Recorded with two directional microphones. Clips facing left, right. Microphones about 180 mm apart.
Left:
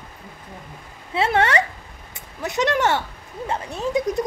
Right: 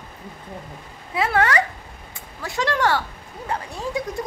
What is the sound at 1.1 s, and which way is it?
Speech, 25° left (ahead or behind).